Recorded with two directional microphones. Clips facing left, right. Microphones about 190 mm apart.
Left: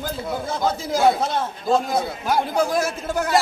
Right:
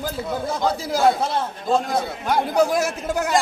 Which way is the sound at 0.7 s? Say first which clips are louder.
Left 1 dB; 5° right (ahead or behind).